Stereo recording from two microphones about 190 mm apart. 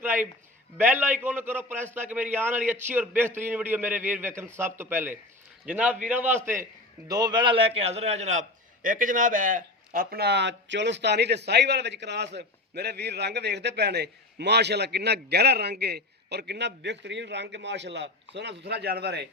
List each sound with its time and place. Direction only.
0.8 s a man's voice: 10° right (ahead or behind); by 19.3 s 60° right (ahead or behind)